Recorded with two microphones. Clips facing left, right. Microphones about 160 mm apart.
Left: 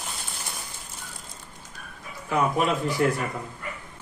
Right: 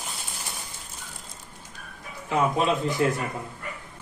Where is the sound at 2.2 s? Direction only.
20° right (ahead or behind).